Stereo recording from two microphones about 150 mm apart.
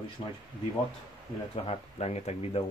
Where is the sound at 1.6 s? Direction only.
45° left (ahead or behind).